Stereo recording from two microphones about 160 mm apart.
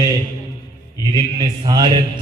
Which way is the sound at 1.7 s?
25° right (ahead or behind).